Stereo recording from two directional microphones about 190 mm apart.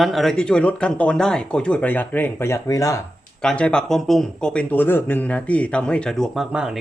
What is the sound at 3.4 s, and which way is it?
Speech, 5° left (ahead or behind).